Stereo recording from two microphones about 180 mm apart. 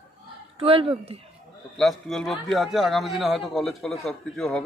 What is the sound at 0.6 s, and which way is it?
Speech, 30° right (ahead or behind).